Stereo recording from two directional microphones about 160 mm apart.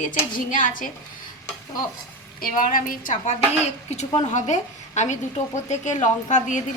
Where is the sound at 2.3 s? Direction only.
60° left (ahead or behind).